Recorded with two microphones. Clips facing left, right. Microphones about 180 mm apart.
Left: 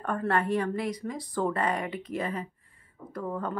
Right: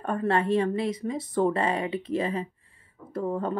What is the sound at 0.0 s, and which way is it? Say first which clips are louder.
Speech: right 2 dB; 25° right (ahead or behind).